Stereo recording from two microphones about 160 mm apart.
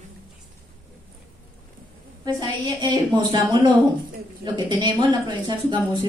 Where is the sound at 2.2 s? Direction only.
30° right (ahead or behind).